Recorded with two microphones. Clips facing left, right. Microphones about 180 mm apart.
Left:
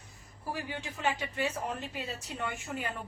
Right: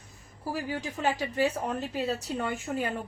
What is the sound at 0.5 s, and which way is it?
A woman's voice, 40° right (ahead or behind).